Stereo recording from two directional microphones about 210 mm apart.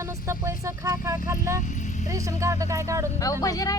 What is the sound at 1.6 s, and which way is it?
Speech, 35° left (ahead or behind).